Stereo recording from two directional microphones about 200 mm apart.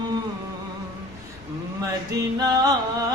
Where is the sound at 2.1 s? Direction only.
20° right (ahead or behind).